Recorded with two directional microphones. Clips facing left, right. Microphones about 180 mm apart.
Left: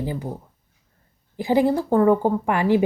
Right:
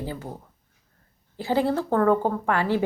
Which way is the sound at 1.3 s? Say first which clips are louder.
Left 4 dB; 15° left (ahead or behind).